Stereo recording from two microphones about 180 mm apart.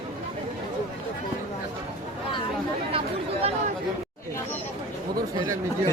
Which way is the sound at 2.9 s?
35° right (ahead or behind).